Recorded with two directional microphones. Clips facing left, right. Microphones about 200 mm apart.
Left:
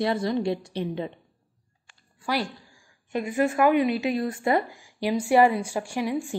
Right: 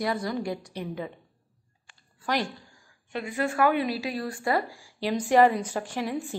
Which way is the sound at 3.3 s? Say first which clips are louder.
Left 4 dB; 15° left (ahead or behind).